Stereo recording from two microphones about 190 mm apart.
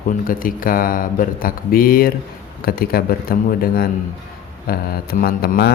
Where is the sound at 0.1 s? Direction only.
45° left (ahead or behind).